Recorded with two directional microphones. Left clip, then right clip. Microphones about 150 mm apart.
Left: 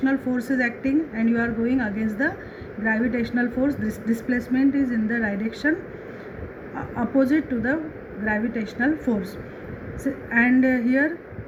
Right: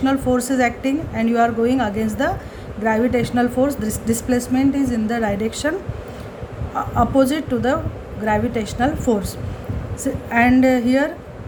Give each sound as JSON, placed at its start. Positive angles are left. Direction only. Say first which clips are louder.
{"t": 0.0, "sound": "speech", "louder": "right 6 dB", "side_deg": -75}
{"t": 7.2, "sound": "a woman's voice", "louder": "right 4 dB", "side_deg": -75}